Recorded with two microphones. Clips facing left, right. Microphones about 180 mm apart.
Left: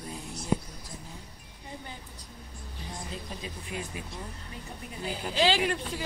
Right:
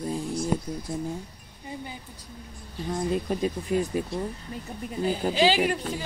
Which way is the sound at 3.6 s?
40° right (ahead or behind).